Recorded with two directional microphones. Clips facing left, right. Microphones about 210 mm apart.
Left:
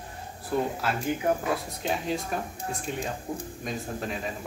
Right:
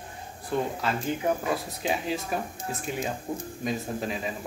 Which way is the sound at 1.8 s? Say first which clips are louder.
Even; 5° right (ahead or behind).